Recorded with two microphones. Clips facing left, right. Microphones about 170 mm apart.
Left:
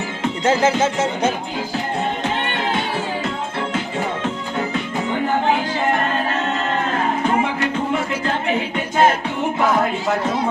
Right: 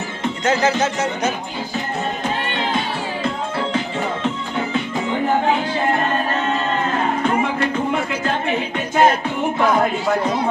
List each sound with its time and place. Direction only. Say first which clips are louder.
0.5 s speech: left 1 dB; 25° left (ahead or behind)